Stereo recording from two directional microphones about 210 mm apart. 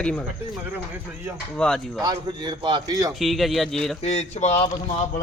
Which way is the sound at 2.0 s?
20° right (ahead or behind).